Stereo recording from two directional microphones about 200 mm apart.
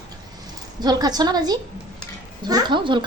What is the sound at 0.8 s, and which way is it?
Speech, 20° right (ahead or behind).